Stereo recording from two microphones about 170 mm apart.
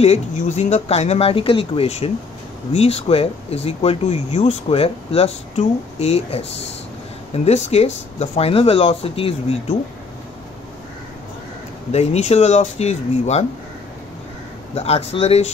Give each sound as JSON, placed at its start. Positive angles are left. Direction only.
{"t": 0.0, "sound": "speech", "side_deg": 40}
{"t": 11.9, "sound": "speech", "side_deg": 40}
{"t": 14.8, "sound": "speech", "side_deg": 35}